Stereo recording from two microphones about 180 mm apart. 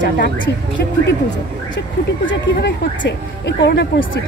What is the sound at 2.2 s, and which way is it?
Speech, 90° left.